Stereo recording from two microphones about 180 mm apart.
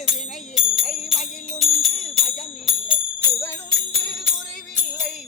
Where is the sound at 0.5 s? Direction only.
Centre (ahead or behind).